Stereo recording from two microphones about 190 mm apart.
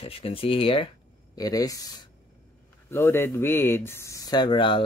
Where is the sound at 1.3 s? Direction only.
20° left (ahead or behind).